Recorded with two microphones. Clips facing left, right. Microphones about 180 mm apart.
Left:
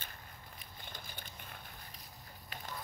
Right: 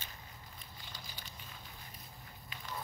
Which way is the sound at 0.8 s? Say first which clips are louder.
Left 2 dB; 55° left (ahead or behind).